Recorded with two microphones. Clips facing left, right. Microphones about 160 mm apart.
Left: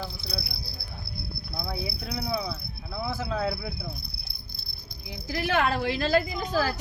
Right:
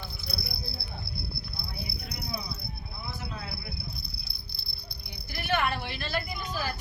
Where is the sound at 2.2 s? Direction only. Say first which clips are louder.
Left 8 dB; 60° left (ahead or behind).